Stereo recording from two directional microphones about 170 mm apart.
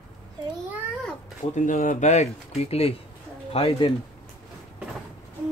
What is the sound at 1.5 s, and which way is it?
Speech, 50° left (ahead or behind).